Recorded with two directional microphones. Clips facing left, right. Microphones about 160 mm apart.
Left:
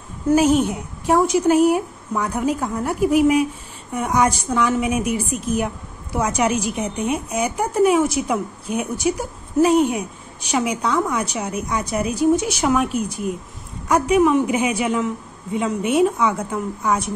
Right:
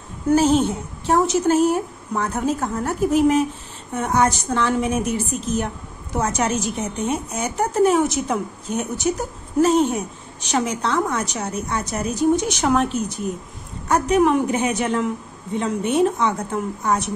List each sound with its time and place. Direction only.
0.3 s speech: 10° left (ahead or behind)
2.8 s speech: 10° left (ahead or behind)